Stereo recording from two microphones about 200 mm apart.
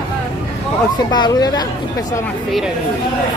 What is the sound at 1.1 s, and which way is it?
Speech, 20° left (ahead or behind).